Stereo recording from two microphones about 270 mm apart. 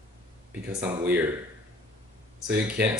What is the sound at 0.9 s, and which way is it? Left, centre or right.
Speech, centre.